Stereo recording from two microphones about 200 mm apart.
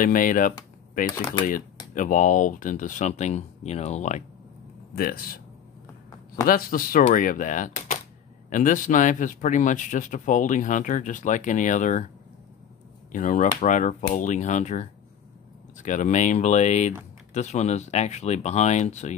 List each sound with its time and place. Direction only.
0.0 s speech: 45° left (ahead or behind)
4.9 s speech: 50° left (ahead or behind)
6.4 s speech: 45° left (ahead or behind)
13.1 s speech: 40° left (ahead or behind)